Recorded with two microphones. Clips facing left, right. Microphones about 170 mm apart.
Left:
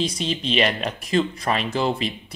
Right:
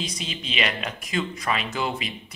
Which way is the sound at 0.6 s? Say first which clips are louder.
Left 4 dB; 40° left (ahead or behind).